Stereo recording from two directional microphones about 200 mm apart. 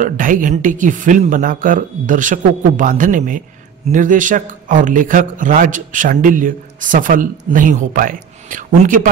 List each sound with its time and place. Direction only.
0.0 s speech: 40° right (ahead or behind)